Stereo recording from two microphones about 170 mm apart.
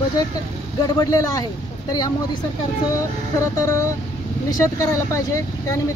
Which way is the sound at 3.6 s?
15° left (ahead or behind).